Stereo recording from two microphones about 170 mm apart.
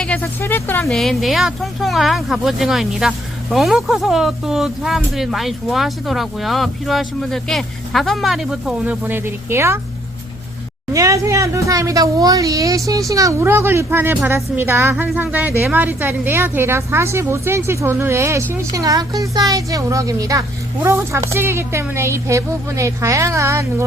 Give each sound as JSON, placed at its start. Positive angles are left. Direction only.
{"t": 0.0, "sound": "speech", "side_deg": 10}
{"t": 0.9, "sound": "speech", "side_deg": 0}
{"t": 10.9, "sound": "a woman's voice", "side_deg": -20}